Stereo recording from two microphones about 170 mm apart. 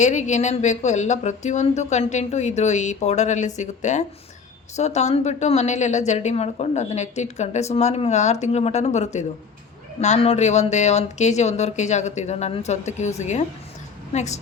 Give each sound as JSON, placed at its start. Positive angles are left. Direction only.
{"t": 0.0, "sound": "a woman's voice", "side_deg": 45}